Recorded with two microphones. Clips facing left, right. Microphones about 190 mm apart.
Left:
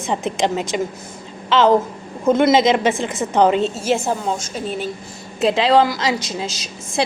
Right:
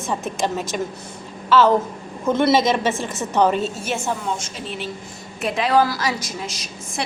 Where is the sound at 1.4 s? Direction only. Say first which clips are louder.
Left 1 dB; 20° left (ahead or behind).